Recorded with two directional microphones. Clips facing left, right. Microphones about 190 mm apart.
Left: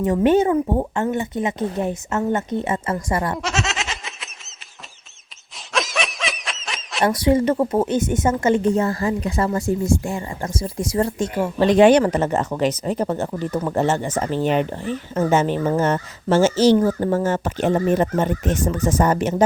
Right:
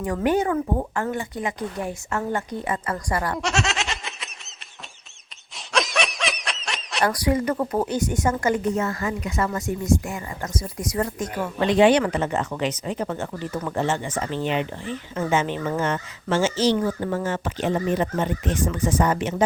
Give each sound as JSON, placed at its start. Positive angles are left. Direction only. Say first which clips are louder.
{"t": 0.0, "sound": "a woman's voice", "louder": "left 6 dB", "side_deg": 25}
{"t": 3.3, "sound": "snicker", "louder": "even", "side_deg": 0}
{"t": 5.7, "sound": "snicker", "louder": "even", "side_deg": 0}
{"t": 7.0, "sound": "a woman's voice", "louder": "left 5 dB", "side_deg": 25}
{"t": 11.7, "sound": "speech", "louder": "left 4 dB", "side_deg": 45}